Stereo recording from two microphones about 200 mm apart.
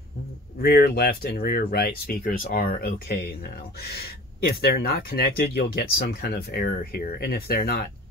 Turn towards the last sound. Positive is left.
turn(degrees=50)  # may be behind; listen again after turning